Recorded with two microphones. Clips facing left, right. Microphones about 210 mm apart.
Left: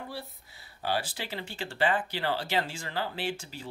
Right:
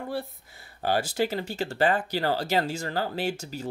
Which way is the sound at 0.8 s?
45° right (ahead or behind).